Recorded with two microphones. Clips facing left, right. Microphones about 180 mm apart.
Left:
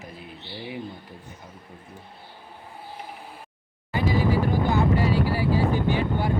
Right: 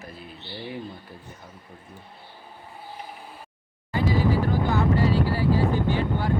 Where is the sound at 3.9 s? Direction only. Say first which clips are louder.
Even; 15° left (ahead or behind).